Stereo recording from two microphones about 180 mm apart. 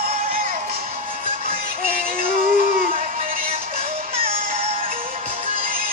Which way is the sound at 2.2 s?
50° right (ahead or behind).